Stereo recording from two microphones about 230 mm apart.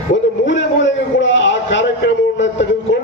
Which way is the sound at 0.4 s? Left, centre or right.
Left.